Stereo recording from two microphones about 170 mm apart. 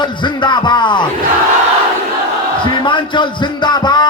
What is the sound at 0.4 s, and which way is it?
Speech, 25° left (ahead or behind).